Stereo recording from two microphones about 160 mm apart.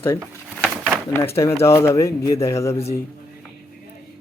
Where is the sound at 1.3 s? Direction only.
15° left (ahead or behind).